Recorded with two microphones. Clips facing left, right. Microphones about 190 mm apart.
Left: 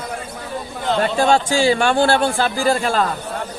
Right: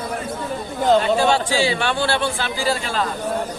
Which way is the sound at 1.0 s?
50° left (ahead or behind).